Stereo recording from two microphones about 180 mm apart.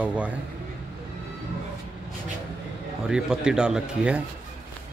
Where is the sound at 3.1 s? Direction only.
5° right (ahead or behind).